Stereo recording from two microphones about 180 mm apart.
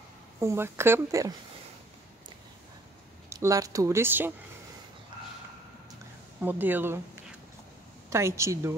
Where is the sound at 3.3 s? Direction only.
15° right (ahead or behind).